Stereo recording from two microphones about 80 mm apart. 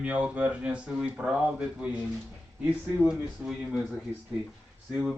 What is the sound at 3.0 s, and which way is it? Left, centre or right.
Speech, centre.